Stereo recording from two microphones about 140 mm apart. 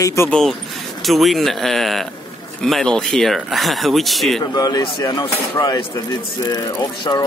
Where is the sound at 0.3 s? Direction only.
5° left (ahead or behind).